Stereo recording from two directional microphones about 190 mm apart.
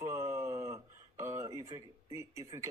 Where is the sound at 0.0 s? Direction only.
15° right (ahead or behind).